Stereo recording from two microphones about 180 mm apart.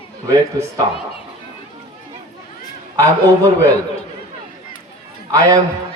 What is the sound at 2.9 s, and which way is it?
Speech, 15° right (ahead or behind).